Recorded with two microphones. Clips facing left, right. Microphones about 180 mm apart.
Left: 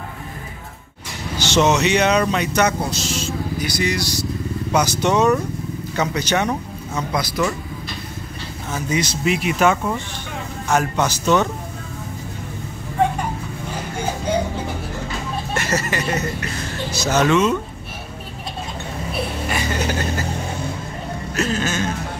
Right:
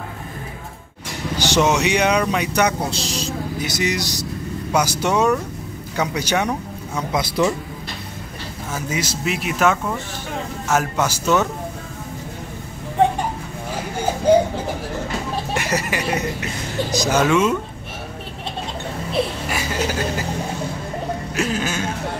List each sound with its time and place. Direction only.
1.4 s speech: 10° right (ahead or behind)
2.9 s speech: 35° right (ahead or behind)
3.6 s speech: 20° right (ahead or behind)
8.7 s speech: 5° right (ahead or behind)
15.5 s speech: 15° right (ahead or behind)
19.5 s a sound: 5° right (ahead or behind)
21.4 s a sound: 10° right (ahead or behind)